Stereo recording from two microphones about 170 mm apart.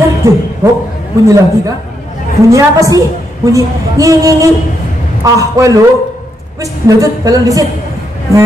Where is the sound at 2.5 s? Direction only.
20° right (ahead or behind).